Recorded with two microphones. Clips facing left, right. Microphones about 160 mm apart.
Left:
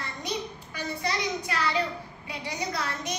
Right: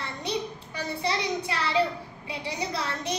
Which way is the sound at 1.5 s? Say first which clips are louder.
Right 3 dB; 30° right (ahead or behind).